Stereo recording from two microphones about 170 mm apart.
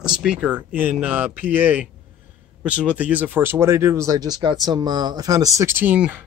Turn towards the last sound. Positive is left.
turn(degrees=-10)  # may be behind; listen again after turning